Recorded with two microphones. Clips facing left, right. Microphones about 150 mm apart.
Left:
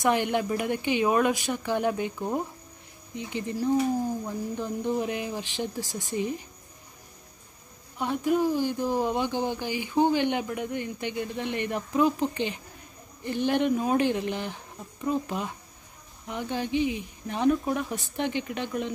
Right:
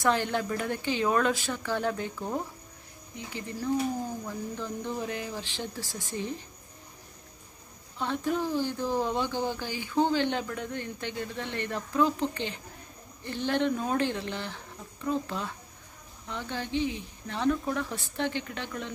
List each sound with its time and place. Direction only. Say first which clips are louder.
0.0 s speech: left 2 dB; 15° left (ahead or behind)
8.0 s speech: left 5 dB; 10° left (ahead or behind)